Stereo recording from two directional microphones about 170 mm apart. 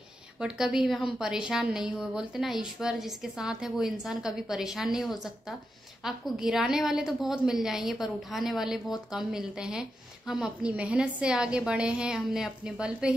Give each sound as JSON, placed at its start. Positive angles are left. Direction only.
{"t": 0.4, "sound": "a woman's voice", "side_deg": -5}